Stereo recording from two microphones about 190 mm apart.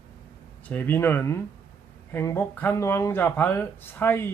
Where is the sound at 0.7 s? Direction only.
10° left (ahead or behind).